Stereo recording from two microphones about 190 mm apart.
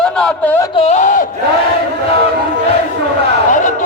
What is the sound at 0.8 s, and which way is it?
Speech, 40° left (ahead or behind).